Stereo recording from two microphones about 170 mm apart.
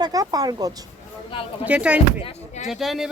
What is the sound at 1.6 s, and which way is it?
Speech, 5° right (ahead or behind).